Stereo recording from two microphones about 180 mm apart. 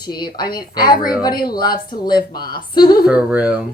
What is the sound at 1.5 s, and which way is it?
Speech, 25° left (ahead or behind).